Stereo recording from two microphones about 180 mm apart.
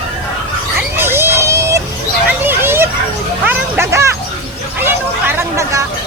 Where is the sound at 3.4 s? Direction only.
10° right (ahead or behind).